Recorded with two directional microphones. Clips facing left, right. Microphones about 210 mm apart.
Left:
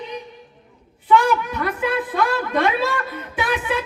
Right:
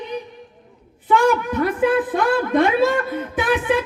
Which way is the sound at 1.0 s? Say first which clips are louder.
Right 1 dB; 50° right (ahead or behind).